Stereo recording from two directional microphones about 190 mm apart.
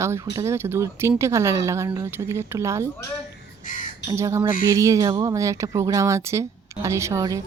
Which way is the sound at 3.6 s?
40° left (ahead or behind).